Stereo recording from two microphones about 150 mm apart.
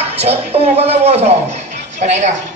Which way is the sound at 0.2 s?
45° right (ahead or behind).